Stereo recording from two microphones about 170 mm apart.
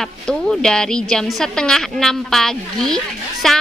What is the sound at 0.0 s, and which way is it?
A woman's voice, 5° left (ahead or behind).